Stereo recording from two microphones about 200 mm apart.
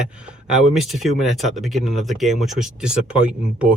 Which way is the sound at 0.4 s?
5° right (ahead or behind).